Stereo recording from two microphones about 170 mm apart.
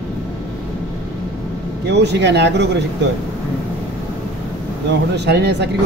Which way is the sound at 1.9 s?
90° right.